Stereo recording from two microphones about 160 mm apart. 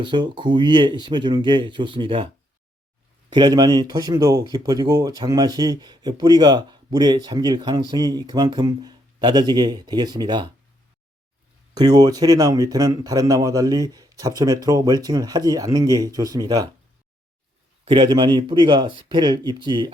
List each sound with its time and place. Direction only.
0.0 s speech: 30° right (ahead or behind)
11.7 s speech: 25° right (ahead or behind)
17.8 s speech: 30° right (ahead or behind)